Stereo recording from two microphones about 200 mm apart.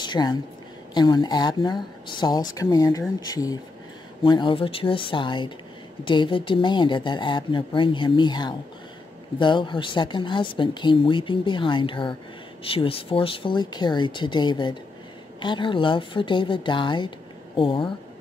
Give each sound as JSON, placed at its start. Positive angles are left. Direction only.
{"t": 0.0, "sound": "speech", "side_deg": 20}